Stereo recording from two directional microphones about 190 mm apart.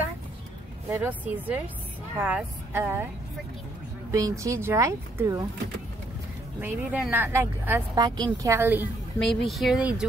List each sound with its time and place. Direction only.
0.8 s speech: 10° right (ahead or behind)
4.1 s speech: 15° right (ahead or behind)
6.6 s speech: 10° right (ahead or behind)
9.2 s speech: centre (ahead or behind)